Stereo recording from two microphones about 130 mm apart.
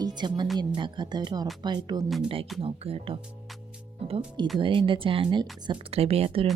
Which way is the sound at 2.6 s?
45° right (ahead or behind).